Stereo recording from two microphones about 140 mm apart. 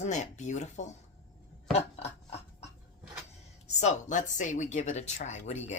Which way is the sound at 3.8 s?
60° left (ahead or behind).